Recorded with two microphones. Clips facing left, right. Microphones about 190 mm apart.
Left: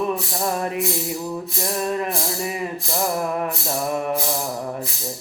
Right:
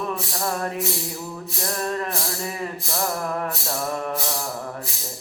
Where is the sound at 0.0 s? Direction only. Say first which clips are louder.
Left 4 dB; 20° left (ahead or behind).